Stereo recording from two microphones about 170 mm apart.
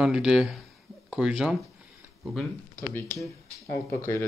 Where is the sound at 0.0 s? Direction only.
5° right (ahead or behind).